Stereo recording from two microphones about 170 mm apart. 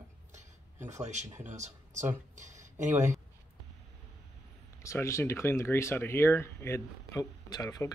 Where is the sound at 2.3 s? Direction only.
45° right (ahead or behind).